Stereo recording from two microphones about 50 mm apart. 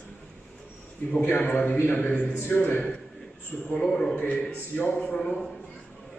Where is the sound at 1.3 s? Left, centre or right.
Left.